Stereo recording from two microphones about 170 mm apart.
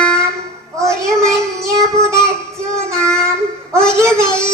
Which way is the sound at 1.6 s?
15° right (ahead or behind).